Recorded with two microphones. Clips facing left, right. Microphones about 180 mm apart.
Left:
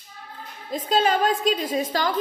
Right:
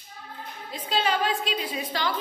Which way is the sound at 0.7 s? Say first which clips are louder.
Left 5 dB; 45° left (ahead or behind).